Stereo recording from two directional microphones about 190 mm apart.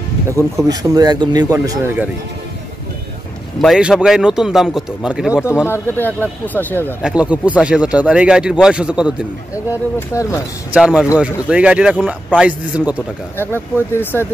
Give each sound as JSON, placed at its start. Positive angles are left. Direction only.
{"t": 0.7, "sound": "speech", "side_deg": -20}
{"t": 3.6, "sound": "speech", "side_deg": 0}
{"t": 5.7, "sound": "speech", "side_deg": 10}
{"t": 7.0, "sound": "speech", "side_deg": -5}
{"t": 9.9, "sound": "speech", "side_deg": 15}
{"t": 10.7, "sound": "speech", "side_deg": -5}
{"t": 13.4, "sound": "speech", "side_deg": 10}